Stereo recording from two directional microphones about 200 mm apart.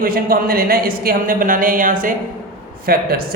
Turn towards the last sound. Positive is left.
turn(degrees=-50)  # may be behind; listen again after turning